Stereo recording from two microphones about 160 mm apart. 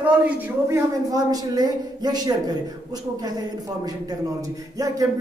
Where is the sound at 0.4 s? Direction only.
15° right (ahead or behind).